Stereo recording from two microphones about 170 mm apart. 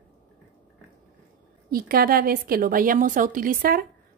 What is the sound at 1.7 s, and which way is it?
A woman's voice, 60° right (ahead or behind).